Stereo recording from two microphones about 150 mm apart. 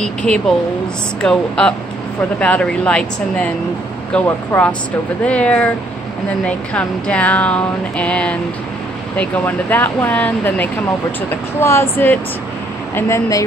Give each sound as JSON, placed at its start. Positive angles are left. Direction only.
{"t": 0.0, "sound": "speech", "side_deg": 5}
{"t": 4.5, "sound": "speech", "side_deg": 10}